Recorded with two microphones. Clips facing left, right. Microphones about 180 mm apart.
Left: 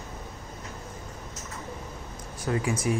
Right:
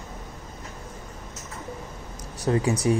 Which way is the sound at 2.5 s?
30° right (ahead or behind).